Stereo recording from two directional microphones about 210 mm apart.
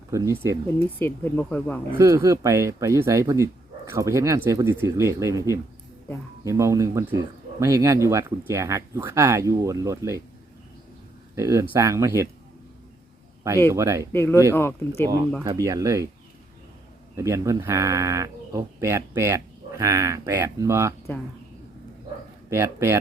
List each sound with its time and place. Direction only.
0.1 s speech: 15° right (ahead or behind)
0.8 s speech: 10° left (ahead or behind)
2.0 s speech: 15° right (ahead or behind)
11.3 s speech: 15° right (ahead or behind)
13.7 s speech: 15° right (ahead or behind)
14.1 s speech: 10° left (ahead or behind)
15.4 s speech: 15° right (ahead or behind)
17.2 s speech: 15° right (ahead or behind)
22.4 s speech: 15° right (ahead or behind)